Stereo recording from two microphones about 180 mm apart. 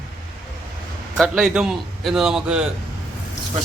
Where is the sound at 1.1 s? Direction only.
Centre (ahead or behind).